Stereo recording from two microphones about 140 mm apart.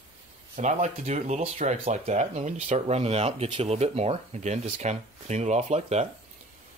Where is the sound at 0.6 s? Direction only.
60° right (ahead or behind).